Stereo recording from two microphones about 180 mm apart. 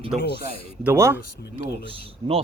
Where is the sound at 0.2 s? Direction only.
60° left (ahead or behind).